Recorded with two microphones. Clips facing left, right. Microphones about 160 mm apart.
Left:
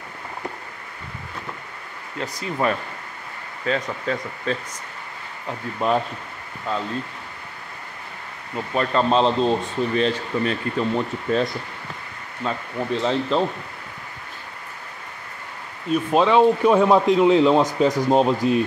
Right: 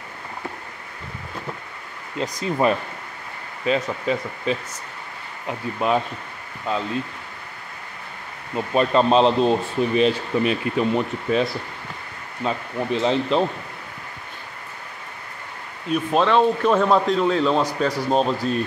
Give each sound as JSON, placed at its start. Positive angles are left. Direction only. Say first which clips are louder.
{"t": 2.1, "sound": "speech", "louder": "right 3 dB", "side_deg": -20}
{"t": 8.5, "sound": "speech", "louder": "right 3 dB", "side_deg": -20}
{"t": 16.2, "sound": "speech", "louder": "left 2 dB", "side_deg": 10}